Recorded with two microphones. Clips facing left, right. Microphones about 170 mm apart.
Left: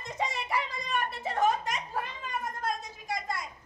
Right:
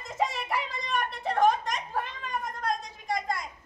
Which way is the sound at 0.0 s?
Centre (ahead or behind).